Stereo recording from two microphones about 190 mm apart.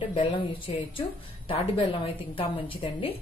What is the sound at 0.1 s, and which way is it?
Speech, 30° left (ahead or behind).